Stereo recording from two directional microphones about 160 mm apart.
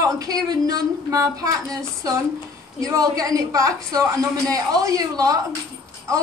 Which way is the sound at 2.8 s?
20° right (ahead or behind).